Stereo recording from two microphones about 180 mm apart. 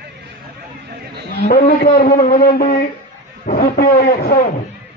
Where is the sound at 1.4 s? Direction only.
55° left (ahead or behind).